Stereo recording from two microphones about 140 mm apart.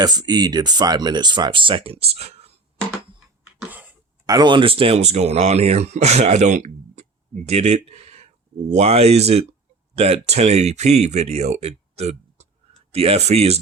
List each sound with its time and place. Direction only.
0.0 s speech: 30° right (ahead or behind); by 2.5 s 50° right (ahead or behind)
3.7 s a sound: 10° right (ahead or behind)
4.3 s speech: 30° right (ahead or behind); by 13.6 s 45° right (ahead or behind)